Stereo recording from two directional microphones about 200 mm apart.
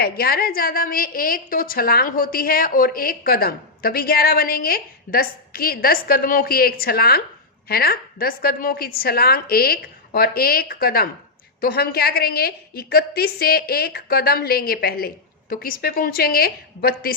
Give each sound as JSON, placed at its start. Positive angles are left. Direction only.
{"t": 0.0, "sound": "a woman's voice", "side_deg": 50}